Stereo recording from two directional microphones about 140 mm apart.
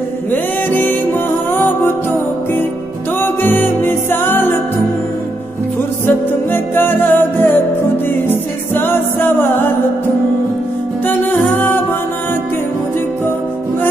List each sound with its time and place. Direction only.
0.3 s music: 15° left (ahead or behind)
3.2 s music: 15° left (ahead or behind)
6.0 s music: 15° left (ahead or behind)
8.7 s music: 15° left (ahead or behind)
11.1 s music: 15° left (ahead or behind)